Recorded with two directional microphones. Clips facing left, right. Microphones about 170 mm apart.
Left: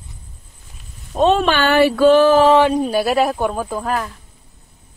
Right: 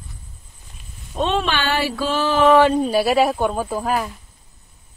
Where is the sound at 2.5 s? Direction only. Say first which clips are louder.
Even; 15° left (ahead or behind).